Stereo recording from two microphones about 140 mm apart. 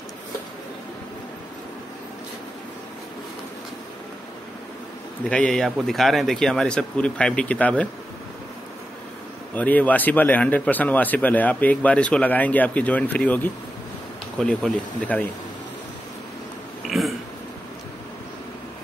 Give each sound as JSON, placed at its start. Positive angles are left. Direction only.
{"t": 5.3, "sound": "speech", "side_deg": 5}
{"t": 9.5, "sound": "a man's voice", "side_deg": 10}
{"t": 17.0, "sound": "burping", "side_deg": 0}